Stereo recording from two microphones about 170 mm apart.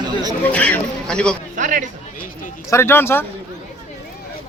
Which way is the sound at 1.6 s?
50° right (ahead or behind).